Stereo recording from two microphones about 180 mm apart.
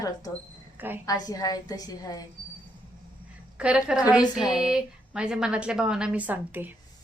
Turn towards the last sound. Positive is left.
turn(degrees=-10)  # may be behind; listen again after turning